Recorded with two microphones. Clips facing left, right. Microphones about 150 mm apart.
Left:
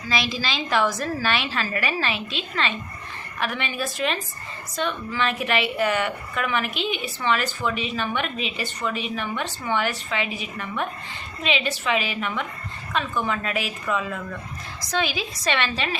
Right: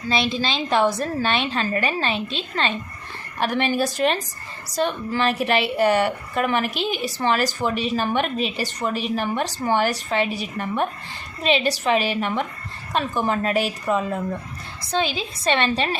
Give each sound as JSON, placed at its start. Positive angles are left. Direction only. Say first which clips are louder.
{"t": 0.1, "sound": "a woman's voice", "louder": "right 4 dB", "side_deg": -30}